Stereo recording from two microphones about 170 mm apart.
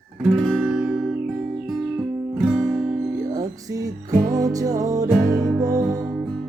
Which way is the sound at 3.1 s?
20° right (ahead or behind).